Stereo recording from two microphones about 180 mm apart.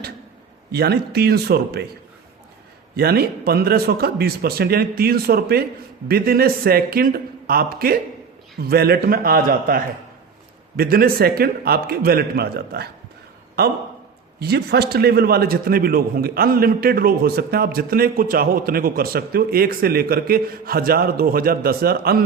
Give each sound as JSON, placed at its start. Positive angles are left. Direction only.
{"t": 0.7, "sound": "a man's voice", "side_deg": -60}
{"t": 2.9, "sound": "a man's voice", "side_deg": -60}